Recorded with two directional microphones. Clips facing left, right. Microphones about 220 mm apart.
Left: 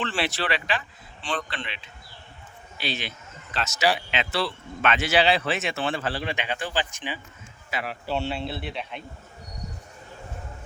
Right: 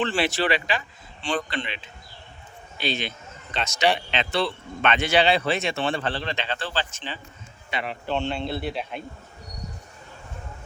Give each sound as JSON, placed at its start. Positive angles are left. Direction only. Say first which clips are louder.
{"t": 0.1, "sound": "speech", "louder": "right 4 dB", "side_deg": 0}
{"t": 7.7, "sound": "speech", "louder": "right 1 dB", "side_deg": 5}